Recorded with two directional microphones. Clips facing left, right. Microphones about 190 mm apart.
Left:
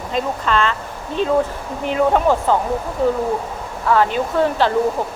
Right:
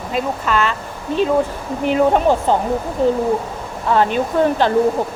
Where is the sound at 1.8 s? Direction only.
20° right (ahead or behind).